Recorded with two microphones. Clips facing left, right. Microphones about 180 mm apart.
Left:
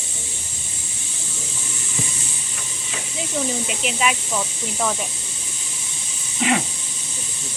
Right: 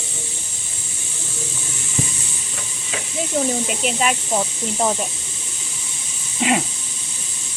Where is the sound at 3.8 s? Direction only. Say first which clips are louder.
Even; 40° right (ahead or behind).